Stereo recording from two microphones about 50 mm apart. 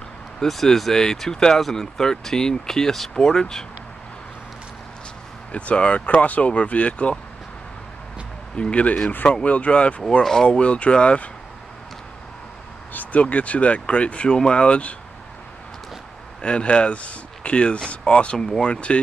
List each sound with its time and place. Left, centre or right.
0.4 s speech: centre
5.5 s speech: left
8.5 s speech: left
10.2 s speech: centre
12.9 s speech: left
16.3 s speech: left